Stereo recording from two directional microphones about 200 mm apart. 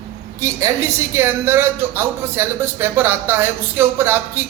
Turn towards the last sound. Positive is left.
turn(degrees=-10)  # may be behind; listen again after turning